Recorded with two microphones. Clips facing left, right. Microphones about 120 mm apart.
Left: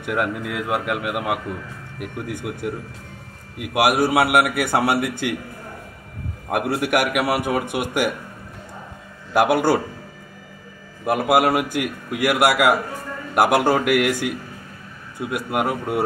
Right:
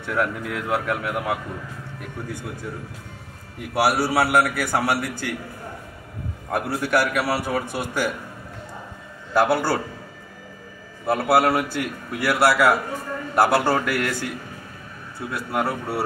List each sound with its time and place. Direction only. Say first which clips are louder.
0.0 s a man's voice: left 1 dB; 10° left (ahead or behind)
3.5 s a man's voice: left 2 dB; 10° left (ahead or behind)
6.5 s a man's voice: left 2 dB; 20° left (ahead or behind)
9.3 s a man's voice: left 3 dB; 15° left (ahead or behind)
11.1 s a man's voice: left 1 dB; 15° left (ahead or behind)